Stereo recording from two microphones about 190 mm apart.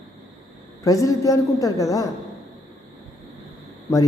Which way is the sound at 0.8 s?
20° left (ahead or behind).